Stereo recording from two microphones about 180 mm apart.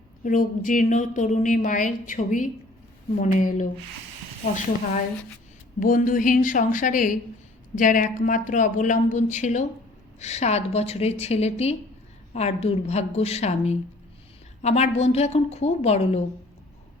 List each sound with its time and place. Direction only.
0.3 s a woman's voice: 45° left (ahead or behind)
5.8 s a woman's voice: 50° left (ahead or behind)